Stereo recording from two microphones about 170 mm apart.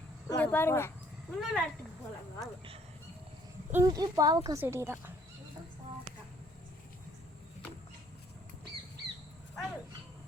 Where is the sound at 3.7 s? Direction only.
20° right (ahead or behind).